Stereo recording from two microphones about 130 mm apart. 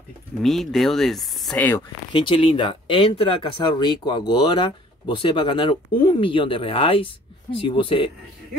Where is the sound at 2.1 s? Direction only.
40° left (ahead or behind).